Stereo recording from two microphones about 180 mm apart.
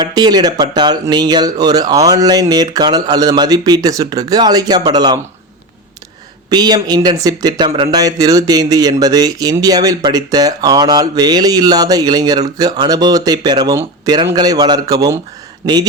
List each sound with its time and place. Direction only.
0.0 s speech: 20° right (ahead or behind)
6.5 s speech: 20° right (ahead or behind)